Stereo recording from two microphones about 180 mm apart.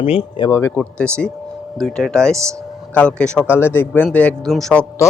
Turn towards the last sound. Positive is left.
turn(degrees=5)  # may be behind; listen again after turning